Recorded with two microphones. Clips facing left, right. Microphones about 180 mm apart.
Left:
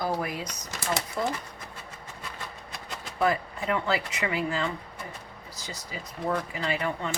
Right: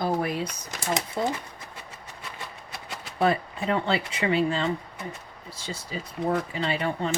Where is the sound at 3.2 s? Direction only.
30° right (ahead or behind).